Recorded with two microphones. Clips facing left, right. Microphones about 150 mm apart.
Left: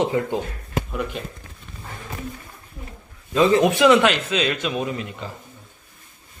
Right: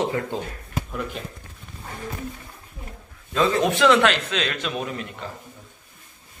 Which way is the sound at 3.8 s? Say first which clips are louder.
Left 2 dB; 5° left (ahead or behind).